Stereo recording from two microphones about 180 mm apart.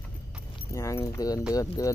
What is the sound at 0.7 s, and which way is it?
Speech, 15° left (ahead or behind).